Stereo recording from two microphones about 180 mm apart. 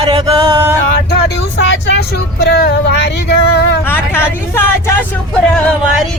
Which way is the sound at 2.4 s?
60° left (ahead or behind).